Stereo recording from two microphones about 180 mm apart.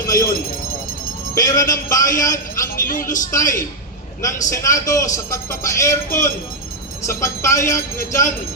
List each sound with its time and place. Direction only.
0.0 s speech: 20° left (ahead or behind)
1.4 s a man's voice: 20° left (ahead or behind)
2.8 s a man's voice: 50° left (ahead or behind)
4.2 s a man's voice: 15° left (ahead or behind)